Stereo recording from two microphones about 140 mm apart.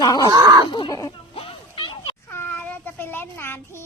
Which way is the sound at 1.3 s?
40° left (ahead or behind).